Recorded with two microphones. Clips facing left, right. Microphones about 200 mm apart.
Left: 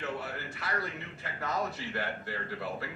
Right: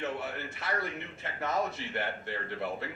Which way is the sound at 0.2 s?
25° right (ahead or behind).